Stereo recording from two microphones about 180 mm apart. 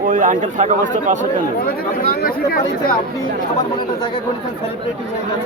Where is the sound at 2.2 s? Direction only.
55° left (ahead or behind).